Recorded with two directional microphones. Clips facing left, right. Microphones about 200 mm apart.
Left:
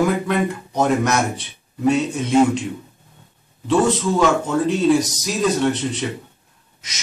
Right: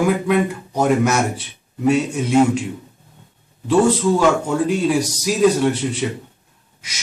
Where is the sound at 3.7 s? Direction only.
10° right (ahead or behind).